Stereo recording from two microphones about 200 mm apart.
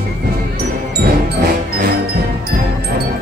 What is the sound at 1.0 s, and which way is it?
Music, 50° right (ahead or behind).